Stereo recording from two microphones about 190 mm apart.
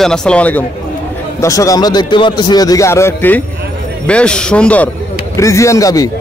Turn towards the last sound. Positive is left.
turn(degrees=20)  # may be behind; listen again after turning